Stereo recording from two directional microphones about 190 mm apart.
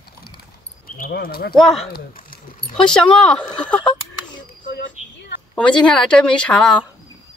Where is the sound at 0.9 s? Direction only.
50° left (ahead or behind).